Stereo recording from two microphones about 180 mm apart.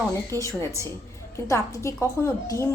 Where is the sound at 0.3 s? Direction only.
20° right (ahead or behind).